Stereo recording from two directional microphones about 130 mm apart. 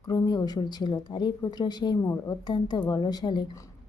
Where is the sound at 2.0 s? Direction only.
20° left (ahead or behind).